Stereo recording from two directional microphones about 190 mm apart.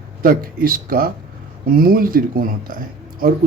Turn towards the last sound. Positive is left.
turn(degrees=-50)  # may be behind; listen again after turning